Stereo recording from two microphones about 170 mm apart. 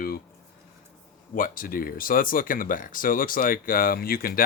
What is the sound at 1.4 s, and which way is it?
Speech, 55° left (ahead or behind).